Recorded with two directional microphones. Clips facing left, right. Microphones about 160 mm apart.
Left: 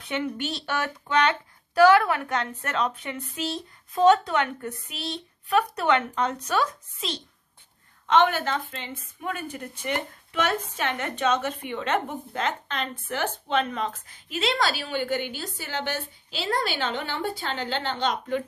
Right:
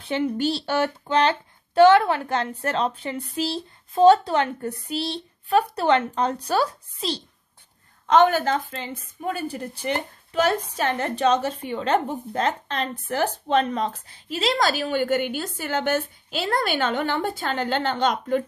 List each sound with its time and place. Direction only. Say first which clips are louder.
0.0 s a woman's voice: right 6 dB; 30° right (ahead or behind); by 18.4 s 45° right (ahead or behind)